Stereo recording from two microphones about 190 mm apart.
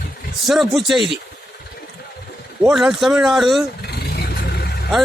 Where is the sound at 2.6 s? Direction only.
Centre (ahead or behind).